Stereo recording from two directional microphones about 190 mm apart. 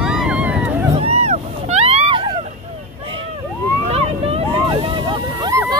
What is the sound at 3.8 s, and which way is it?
Vehicle, 30° right (ahead or behind).